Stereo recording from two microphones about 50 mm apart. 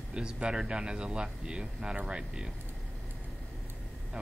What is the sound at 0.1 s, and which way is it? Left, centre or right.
Speech, centre.